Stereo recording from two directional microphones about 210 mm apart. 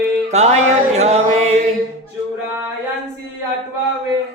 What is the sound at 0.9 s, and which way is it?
Music, 30° right (ahead or behind).